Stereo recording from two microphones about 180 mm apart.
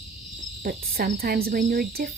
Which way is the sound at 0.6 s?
55° right (ahead or behind).